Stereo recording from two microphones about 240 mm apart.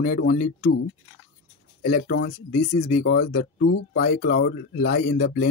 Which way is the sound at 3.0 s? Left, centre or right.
Left.